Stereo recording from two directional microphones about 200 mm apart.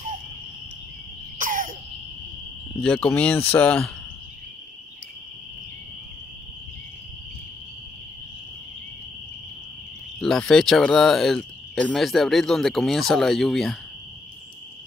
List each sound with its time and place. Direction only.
1.4 s a sound: 40° right (ahead or behind)
2.8 s speech: 5° left (ahead or behind)
10.2 s speech: centre (ahead or behind)